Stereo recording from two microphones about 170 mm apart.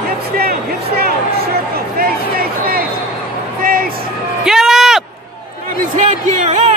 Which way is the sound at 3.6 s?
60° right (ahead or behind).